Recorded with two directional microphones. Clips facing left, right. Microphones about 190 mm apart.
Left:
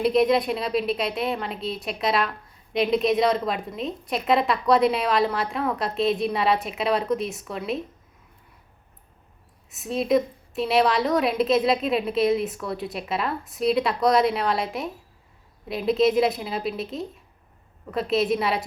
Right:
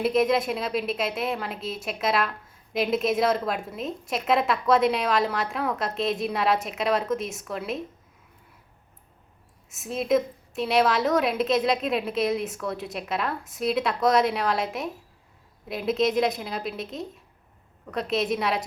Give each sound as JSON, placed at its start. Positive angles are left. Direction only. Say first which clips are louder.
{"t": 0.0, "sound": "a woman's voice", "louder": "left 2 dB", "side_deg": 0}
{"t": 9.7, "sound": "a woman's voice", "louder": "left 2 dB", "side_deg": 0}